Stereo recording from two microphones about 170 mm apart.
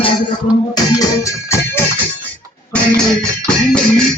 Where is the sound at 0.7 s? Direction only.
20° left (ahead or behind).